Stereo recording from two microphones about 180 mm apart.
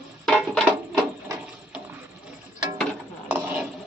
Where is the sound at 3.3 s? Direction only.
10° right (ahead or behind).